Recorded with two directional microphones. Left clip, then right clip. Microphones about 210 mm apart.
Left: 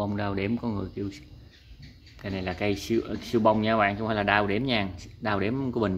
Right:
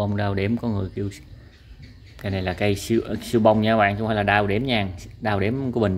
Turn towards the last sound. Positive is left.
turn(degrees=-10)  # may be behind; listen again after turning